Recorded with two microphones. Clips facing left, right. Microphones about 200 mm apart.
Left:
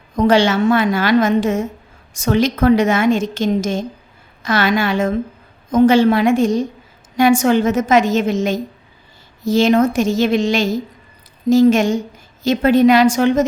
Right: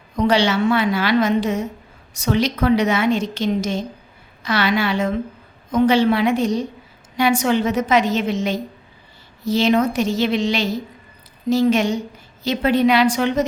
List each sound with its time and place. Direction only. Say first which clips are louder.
0.2 s a woman's voice: left 4 dB; 50° left (ahead or behind)